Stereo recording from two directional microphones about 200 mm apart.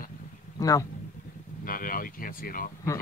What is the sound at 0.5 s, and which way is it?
Speech, 15° left (ahead or behind).